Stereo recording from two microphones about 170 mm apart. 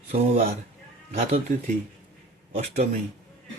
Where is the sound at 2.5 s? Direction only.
40° right (ahead or behind).